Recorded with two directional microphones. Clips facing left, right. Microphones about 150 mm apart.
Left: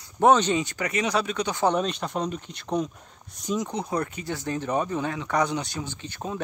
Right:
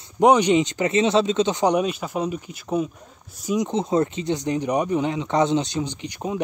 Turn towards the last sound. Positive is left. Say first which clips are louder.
# right 5 dB
turn(degrees=-15)  # may be behind; listen again after turning